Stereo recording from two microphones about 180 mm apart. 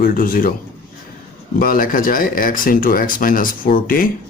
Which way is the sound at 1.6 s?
50° left (ahead or behind).